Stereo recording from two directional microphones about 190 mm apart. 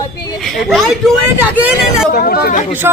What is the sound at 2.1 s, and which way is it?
Speech, 50° left (ahead or behind).